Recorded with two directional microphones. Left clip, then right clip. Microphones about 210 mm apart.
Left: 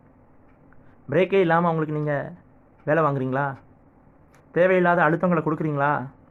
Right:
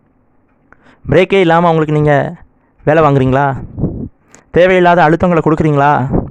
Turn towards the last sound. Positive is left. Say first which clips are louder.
# right 13 dB
turn(degrees=-55)  # may be behind; listen again after turning